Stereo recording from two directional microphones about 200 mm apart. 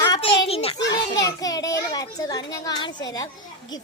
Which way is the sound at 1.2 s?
20° left (ahead or behind).